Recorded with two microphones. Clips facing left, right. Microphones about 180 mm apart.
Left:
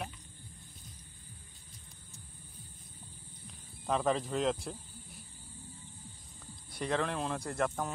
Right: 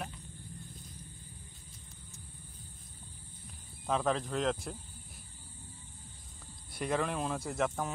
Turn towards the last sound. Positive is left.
turn(degrees=0)  # may be behind; listen again after turning